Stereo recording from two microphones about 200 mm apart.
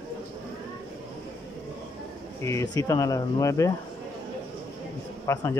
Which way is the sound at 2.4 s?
15° left (ahead or behind).